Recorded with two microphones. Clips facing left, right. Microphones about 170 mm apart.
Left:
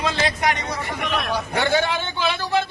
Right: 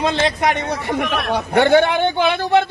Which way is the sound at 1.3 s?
60° right (ahead or behind).